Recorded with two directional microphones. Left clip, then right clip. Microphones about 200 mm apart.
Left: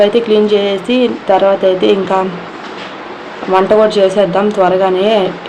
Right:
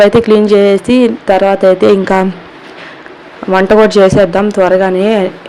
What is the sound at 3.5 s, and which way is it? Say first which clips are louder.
Speech: right 2 dB; 40° right (ahead or behind).